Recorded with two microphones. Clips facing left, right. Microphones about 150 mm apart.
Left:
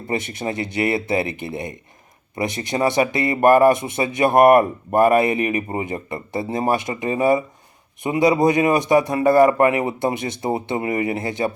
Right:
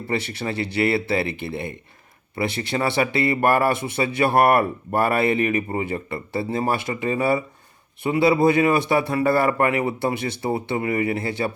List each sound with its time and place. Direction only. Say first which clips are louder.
0.1 s speech: left 2 dB; 20° left (ahead or behind)